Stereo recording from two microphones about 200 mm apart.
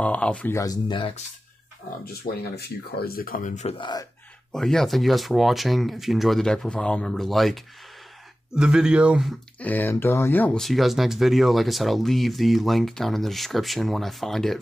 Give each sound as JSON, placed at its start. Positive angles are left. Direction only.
{"t": 0.0, "sound": "speech", "side_deg": 5}
{"t": 2.5, "sound": "speech", "side_deg": 50}
{"t": 4.5, "sound": "speech", "side_deg": 5}
{"t": 9.6, "sound": "speech", "side_deg": 10}